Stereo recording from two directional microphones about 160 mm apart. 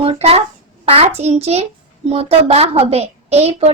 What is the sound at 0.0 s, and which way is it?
A child's voice, 40° right (ahead or behind).